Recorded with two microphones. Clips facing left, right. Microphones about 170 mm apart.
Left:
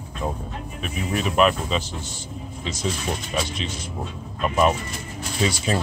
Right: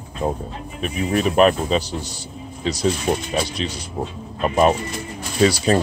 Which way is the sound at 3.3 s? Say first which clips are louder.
Right 4 dB; 35° right (ahead or behind).